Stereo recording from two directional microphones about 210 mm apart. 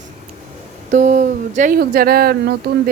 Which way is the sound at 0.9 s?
35° right (ahead or behind).